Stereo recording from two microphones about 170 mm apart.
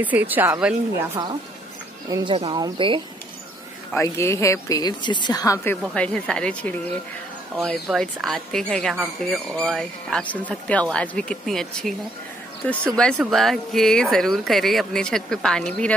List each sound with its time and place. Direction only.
0.0 s a woman's voice: 10° right (ahead or behind)
2.0 s speech: 20° right (ahead or behind)
3.9 s a woman's voice: 15° left (ahead or behind)
8.9 s speech: 5° right (ahead or behind)